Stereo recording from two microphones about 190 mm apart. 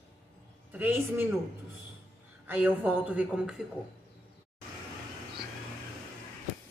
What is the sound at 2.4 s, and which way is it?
A woman's voice, 10° right (ahead or behind).